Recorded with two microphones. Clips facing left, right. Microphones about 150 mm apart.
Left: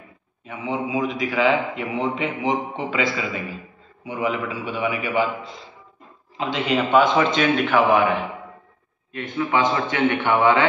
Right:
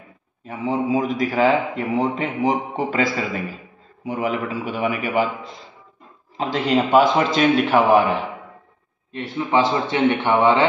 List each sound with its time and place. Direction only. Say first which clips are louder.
0.5 s a man's voice: right 4 dB; 40° right (ahead or behind)
6.3 s a man's voice: right 3 dB; 40° right (ahead or behind)
9.1 s a man's voice: right 2 dB; 30° right (ahead or behind)